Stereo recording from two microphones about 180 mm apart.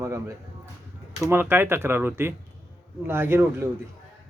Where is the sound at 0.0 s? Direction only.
15° right (ahead or behind).